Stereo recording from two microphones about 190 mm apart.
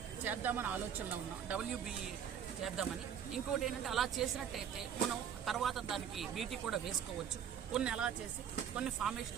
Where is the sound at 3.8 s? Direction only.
Centre (ahead or behind).